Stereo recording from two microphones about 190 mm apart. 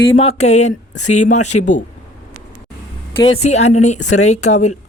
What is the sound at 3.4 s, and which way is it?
Speech, 35° left (ahead or behind).